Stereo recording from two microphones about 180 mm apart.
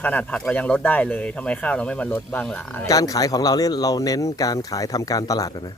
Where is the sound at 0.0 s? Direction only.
10° left (ahead or behind).